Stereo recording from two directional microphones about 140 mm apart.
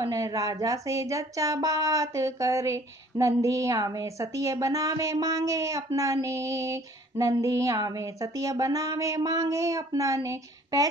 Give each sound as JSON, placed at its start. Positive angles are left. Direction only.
{"t": 0.0, "sound": "speech", "side_deg": -25}